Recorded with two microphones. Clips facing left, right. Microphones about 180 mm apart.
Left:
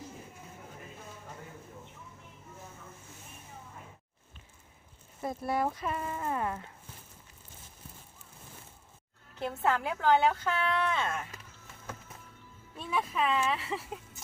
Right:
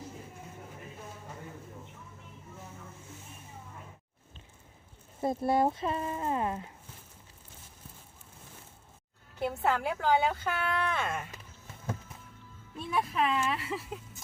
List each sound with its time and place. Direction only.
5.2 s speech: 25° right (ahead or behind)
9.4 s speech: 5° right (ahead or behind)
12.9 s speech: 5° right (ahead or behind)